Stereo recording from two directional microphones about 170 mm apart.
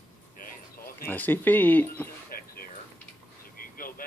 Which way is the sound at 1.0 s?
10° left (ahead or behind).